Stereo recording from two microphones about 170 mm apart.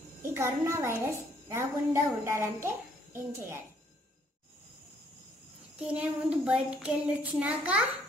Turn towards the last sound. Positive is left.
turn(degrees=-10)  # may be behind; listen again after turning